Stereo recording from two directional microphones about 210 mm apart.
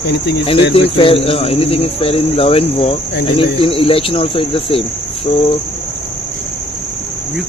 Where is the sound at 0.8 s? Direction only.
25° left (ahead or behind).